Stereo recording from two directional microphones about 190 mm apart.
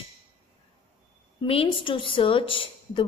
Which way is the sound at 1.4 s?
30° left (ahead or behind).